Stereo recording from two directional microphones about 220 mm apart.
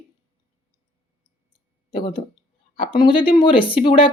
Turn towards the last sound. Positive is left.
turn(degrees=25)  # may be behind; listen again after turning